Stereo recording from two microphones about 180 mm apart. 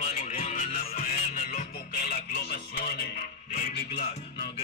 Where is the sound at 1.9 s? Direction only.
60° left (ahead or behind).